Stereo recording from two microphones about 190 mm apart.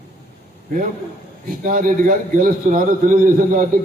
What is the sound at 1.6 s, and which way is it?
A man's voice, 45° right (ahead or behind).